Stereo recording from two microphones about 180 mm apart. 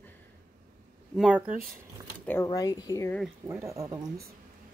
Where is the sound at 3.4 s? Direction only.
15° right (ahead or behind).